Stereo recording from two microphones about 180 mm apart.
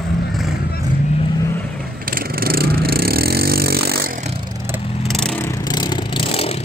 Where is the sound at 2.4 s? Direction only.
55° right (ahead or behind).